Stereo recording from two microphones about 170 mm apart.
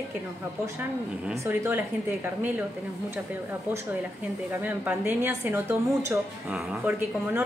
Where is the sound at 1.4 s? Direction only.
15° right (ahead or behind).